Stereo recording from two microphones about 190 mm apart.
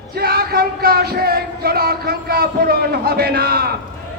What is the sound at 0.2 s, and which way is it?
Music, 55° right (ahead or behind).